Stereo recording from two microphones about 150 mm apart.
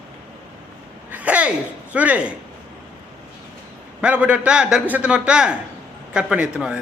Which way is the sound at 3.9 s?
10° right (ahead or behind).